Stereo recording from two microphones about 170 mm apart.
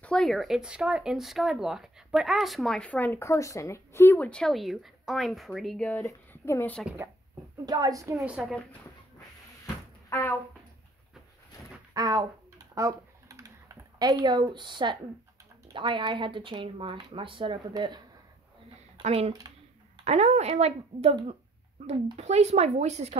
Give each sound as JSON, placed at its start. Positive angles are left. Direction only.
{"t": 0.0, "sound": "speech", "side_deg": 5}
{"t": 7.6, "sound": "speech", "side_deg": -20}
{"t": 8.3, "sound": "speech", "side_deg": 0}
{"t": 10.0, "sound": "speech", "side_deg": 15}
{"t": 11.9, "sound": "typing", "side_deg": -20}
{"t": 14.2, "sound": "speech", "side_deg": -25}
{"t": 19.0, "sound": "a woman's voice", "side_deg": -35}